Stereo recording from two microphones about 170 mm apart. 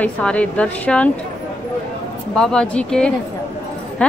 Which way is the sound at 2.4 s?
5° left (ahead or behind).